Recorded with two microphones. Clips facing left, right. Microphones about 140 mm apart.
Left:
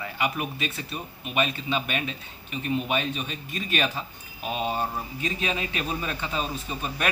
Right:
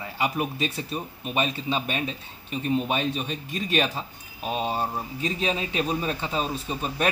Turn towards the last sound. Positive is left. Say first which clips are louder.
# right 3 dB
turn(degrees=-30)  # may be behind; listen again after turning